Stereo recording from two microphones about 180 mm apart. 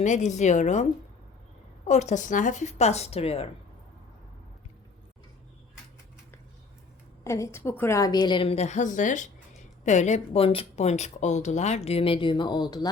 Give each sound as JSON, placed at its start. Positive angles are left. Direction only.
{"t": 0.0, "sound": "speech", "side_deg": 40}
{"t": 7.3, "sound": "a woman's voice", "side_deg": 15}